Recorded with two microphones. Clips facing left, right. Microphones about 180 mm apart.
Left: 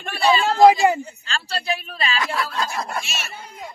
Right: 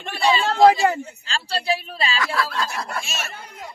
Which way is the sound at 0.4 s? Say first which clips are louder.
Left 2 dB; 10° left (ahead or behind).